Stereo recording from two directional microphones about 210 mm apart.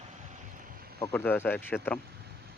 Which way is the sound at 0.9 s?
10° left (ahead or behind).